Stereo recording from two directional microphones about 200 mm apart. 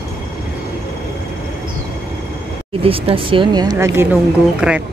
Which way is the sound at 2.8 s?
25° right (ahead or behind).